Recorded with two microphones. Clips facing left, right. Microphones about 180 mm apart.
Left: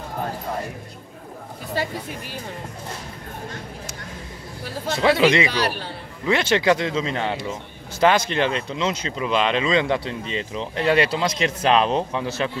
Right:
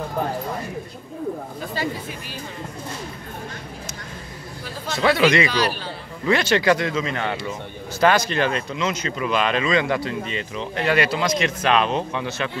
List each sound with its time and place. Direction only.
4.9 s a man's voice: 25° left (ahead or behind)